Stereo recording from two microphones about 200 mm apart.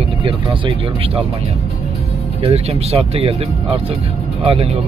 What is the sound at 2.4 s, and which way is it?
Speech, 30° right (ahead or behind).